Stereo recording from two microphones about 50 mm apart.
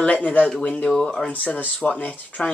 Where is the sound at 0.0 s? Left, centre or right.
Left.